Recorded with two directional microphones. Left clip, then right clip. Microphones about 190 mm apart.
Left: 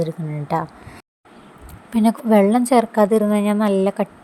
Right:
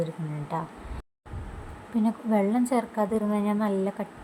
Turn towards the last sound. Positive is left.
turn(degrees=40)  # may be behind; listen again after turning